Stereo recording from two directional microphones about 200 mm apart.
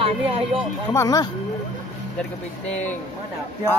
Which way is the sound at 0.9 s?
15° left (ahead or behind).